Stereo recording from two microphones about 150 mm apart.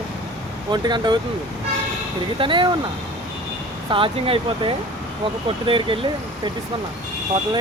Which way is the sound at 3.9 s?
35° right (ahead or behind).